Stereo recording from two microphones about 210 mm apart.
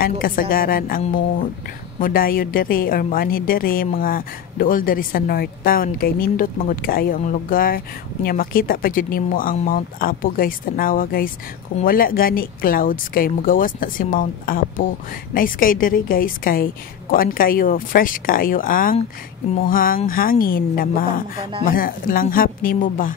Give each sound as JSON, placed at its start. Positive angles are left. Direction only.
{"t": 0.0, "sound": "a woman's voice", "side_deg": 45}